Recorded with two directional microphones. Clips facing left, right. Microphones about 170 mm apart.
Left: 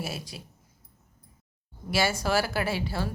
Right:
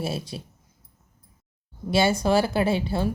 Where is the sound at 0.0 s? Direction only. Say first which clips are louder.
Right 6 dB; 25° right (ahead or behind).